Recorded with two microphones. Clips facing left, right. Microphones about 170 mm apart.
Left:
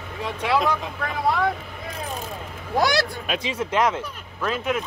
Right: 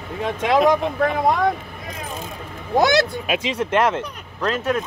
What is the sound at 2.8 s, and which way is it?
Speech, 20° right (ahead or behind).